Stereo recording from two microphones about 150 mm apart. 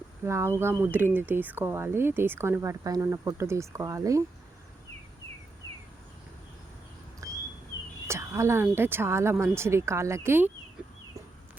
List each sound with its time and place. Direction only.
0.3 s speech: 20° right (ahead or behind)
7.2 s a sound: 20° right (ahead or behind)
8.7 s speech: 15° right (ahead or behind)